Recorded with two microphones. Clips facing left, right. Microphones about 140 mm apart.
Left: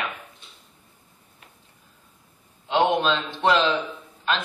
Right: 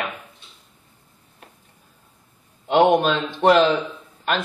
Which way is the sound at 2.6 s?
50° right (ahead or behind).